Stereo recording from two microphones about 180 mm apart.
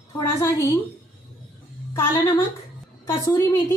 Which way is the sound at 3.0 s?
15° left (ahead or behind).